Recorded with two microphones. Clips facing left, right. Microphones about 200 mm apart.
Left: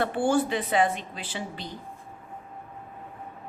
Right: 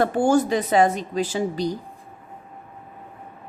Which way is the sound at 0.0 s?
40° right (ahead or behind).